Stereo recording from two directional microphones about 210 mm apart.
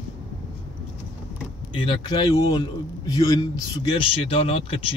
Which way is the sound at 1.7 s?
25° left (ahead or behind).